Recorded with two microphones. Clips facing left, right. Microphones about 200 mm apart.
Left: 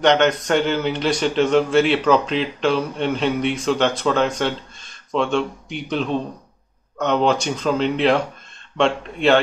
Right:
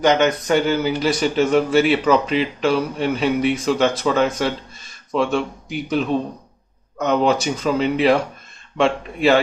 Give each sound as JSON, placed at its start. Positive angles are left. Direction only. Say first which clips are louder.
{"t": 0.0, "sound": "a man's voice", "louder": "even", "side_deg": -5}